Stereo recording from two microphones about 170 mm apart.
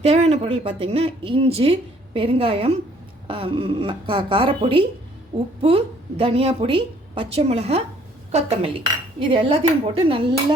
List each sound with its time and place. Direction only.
0.0 s a woman's voice: 40° right (ahead or behind)